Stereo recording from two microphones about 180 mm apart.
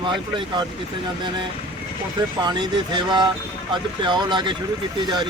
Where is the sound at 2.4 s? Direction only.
25° right (ahead or behind).